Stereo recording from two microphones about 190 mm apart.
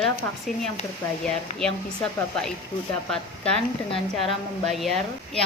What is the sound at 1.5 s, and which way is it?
Speech, 5° left (ahead or behind).